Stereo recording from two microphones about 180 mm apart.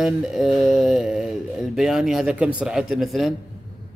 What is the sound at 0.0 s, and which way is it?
A man's voice, centre (ahead or behind).